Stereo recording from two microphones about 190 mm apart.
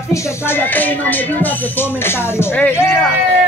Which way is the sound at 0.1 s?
10° left (ahead or behind).